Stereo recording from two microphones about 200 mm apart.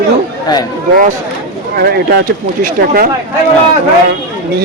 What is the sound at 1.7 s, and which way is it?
Speech, 50° right (ahead or behind).